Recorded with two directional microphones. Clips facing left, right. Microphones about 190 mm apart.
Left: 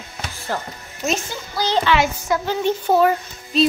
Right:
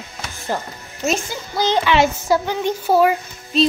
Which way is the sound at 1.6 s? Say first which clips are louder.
Right 2 dB; 15° right (ahead or behind).